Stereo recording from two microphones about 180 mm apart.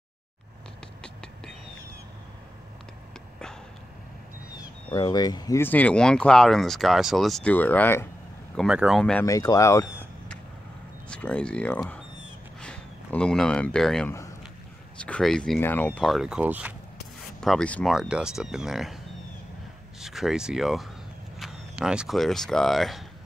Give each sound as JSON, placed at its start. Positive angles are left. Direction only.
{"t": 4.9, "sound": "speech", "side_deg": 20}
{"t": 8.5, "sound": "speech", "side_deg": -5}
{"t": 9.2, "sound": "speech", "side_deg": 20}
{"t": 11.1, "sound": "speech", "side_deg": 5}
{"t": 17.4, "sound": "speech", "side_deg": 5}
{"t": 17.9, "sound": "speech", "side_deg": -5}
{"t": 20.0, "sound": "speech", "side_deg": 0}